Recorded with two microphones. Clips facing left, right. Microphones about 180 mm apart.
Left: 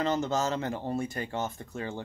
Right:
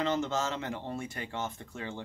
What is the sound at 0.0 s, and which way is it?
Speech, 40° left (ahead or behind).